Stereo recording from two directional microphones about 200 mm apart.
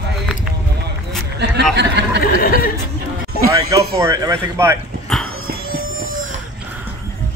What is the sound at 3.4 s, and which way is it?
Speech, 15° right (ahead or behind).